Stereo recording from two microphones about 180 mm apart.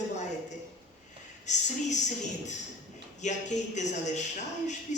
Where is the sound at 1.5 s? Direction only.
40° left (ahead or behind).